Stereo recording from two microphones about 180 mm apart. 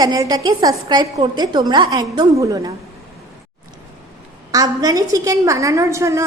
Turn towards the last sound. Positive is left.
turn(degrees=-15)  # may be behind; listen again after turning